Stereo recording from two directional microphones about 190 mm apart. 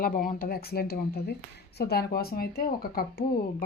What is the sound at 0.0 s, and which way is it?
Speech, 45° left (ahead or behind).